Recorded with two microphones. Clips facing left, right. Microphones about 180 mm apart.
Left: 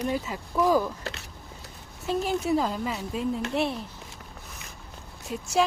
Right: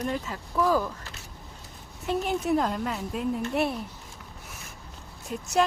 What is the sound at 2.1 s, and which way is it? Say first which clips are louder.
Speech: even; centre (ahead or behind).